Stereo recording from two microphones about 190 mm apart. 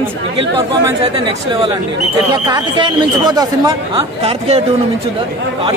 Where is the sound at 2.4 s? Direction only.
25° right (ahead or behind).